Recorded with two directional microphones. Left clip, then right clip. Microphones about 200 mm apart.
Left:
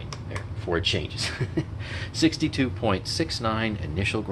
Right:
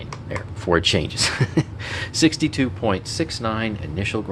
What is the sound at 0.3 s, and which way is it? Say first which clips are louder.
Speech: right 8 dB; 50° right (ahead or behind).